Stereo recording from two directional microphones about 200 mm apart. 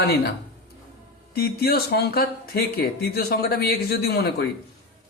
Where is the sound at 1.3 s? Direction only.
50° left (ahead or behind).